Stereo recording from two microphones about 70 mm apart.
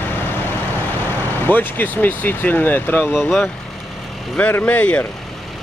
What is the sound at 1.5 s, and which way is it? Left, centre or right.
Speech, left.